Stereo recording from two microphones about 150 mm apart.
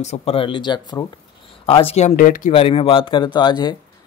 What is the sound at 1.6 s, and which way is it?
Speech, 40° left (ahead or behind).